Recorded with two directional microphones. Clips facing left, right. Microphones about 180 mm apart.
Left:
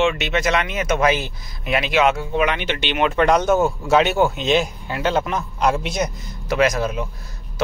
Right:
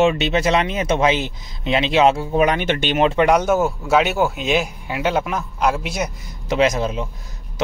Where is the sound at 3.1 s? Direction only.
10° right (ahead or behind).